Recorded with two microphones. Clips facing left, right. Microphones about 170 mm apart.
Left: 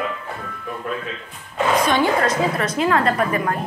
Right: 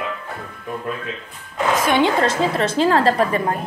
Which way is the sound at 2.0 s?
25° right (ahead or behind).